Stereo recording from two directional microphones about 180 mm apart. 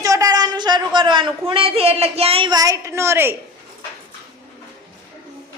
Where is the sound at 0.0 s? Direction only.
20° right (ahead or behind).